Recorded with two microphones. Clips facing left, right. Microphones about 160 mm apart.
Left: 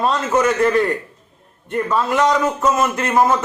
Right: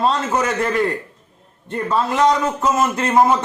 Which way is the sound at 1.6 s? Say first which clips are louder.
Left 1 dB; 25° right (ahead or behind).